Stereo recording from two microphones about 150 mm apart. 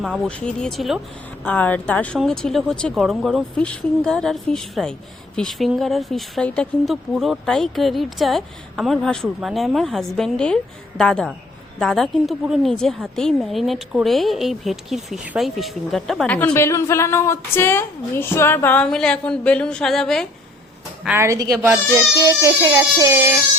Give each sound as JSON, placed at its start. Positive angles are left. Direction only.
{"t": 0.3, "sound": "speech", "side_deg": 5}
{"t": 1.5, "sound": "speech", "side_deg": 10}
{"t": 21.2, "sound": "speech", "side_deg": -20}